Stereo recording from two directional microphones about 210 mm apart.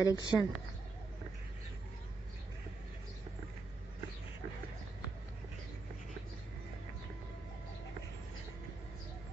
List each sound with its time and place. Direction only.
0.0 s speech: 20° left (ahead or behind)